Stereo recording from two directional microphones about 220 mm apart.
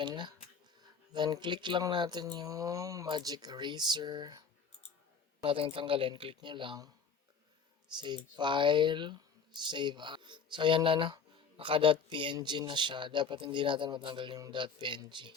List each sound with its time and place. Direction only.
0.0 s a sound: 20° right (ahead or behind)
0.8 s speech: 20° right (ahead or behind)
7.9 s speech: 20° right (ahead or behind)